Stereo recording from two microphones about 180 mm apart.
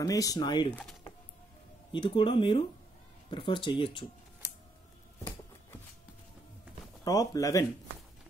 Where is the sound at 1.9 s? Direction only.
25° left (ahead or behind).